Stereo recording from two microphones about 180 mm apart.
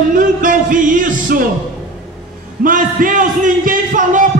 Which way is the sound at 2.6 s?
50° right (ahead or behind).